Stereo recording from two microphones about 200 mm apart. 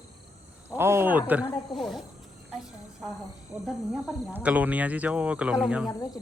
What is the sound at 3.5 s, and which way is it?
Speech, 5° right (ahead or behind).